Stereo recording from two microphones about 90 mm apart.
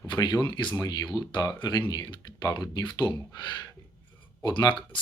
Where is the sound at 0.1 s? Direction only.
50° left (ahead or behind).